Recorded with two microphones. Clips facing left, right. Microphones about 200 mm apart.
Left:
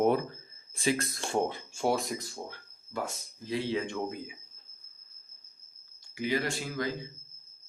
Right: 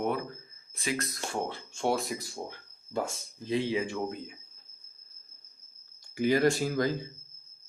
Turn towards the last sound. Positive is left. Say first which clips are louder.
# right 6 dB
turn(degrees=-40)  # may be behind; listen again after turning